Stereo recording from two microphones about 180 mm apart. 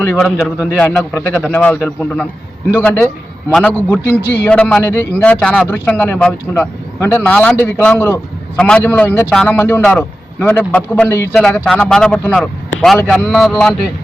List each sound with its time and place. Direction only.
0.1 s speech: 5° left (ahead or behind)
11.3 s speech: 5° left (ahead or behind)